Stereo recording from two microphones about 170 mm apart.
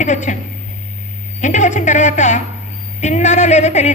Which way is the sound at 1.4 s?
45° left (ahead or behind).